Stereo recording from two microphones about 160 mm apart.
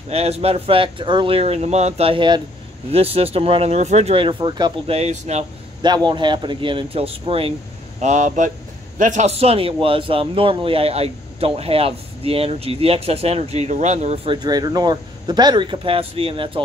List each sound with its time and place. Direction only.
0.1 s a man's voice: 40° right (ahead or behind)
4.9 s speech: 45° right (ahead or behind)
6.0 s a man's voice: 30° right (ahead or behind)
8.0 s a man's voice: 50° right (ahead or behind)